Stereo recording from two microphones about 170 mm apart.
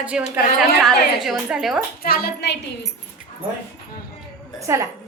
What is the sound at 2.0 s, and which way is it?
Speech, 60° left (ahead or behind).